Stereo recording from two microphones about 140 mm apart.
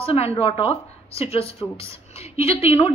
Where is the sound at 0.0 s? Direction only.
45° left (ahead or behind).